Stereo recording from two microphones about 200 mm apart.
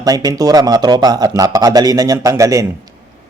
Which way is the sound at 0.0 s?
20° right (ahead or behind).